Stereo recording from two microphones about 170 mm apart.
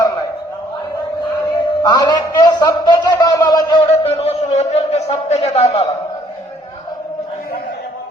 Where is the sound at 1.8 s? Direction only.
25° left (ahead or behind).